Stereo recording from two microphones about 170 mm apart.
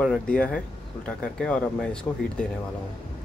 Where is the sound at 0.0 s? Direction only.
5° left (ahead or behind).